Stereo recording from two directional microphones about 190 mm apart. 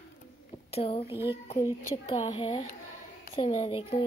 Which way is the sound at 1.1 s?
10° right (ahead or behind).